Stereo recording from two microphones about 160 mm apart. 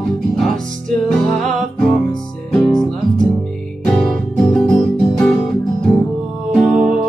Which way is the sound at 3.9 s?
5° left (ahead or behind).